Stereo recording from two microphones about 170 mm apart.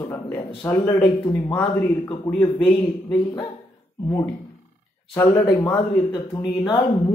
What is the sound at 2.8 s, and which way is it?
Speech, 20° left (ahead or behind).